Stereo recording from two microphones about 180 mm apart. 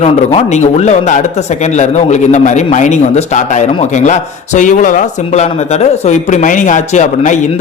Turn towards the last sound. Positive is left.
turn(degrees=40)  # may be behind; listen again after turning